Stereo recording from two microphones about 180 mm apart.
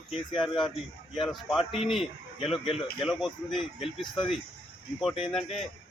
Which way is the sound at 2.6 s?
30° left (ahead or behind).